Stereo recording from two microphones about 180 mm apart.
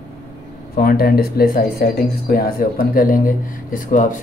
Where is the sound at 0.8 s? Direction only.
55° left (ahead or behind).